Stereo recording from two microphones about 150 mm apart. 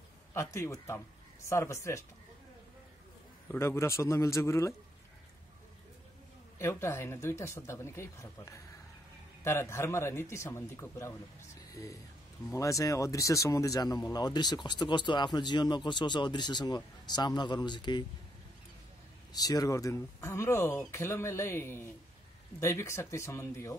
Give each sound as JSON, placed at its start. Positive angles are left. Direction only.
{"t": 0.3, "sound": "speech", "side_deg": 20}
{"t": 3.4, "sound": "speech", "side_deg": 15}
{"t": 6.6, "sound": "speech", "side_deg": 15}
{"t": 19.3, "sound": "speech", "side_deg": 25}